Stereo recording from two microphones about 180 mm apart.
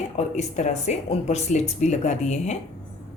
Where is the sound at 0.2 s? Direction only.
40° left (ahead or behind).